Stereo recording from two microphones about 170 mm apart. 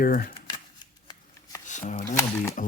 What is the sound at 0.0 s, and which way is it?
Speech, 55° left (ahead or behind).